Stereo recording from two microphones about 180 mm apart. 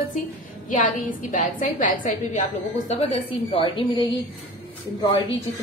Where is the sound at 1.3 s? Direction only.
45° left (ahead or behind).